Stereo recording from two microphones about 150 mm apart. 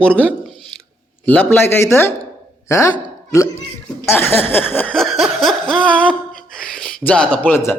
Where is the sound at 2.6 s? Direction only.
20° left (ahead or behind).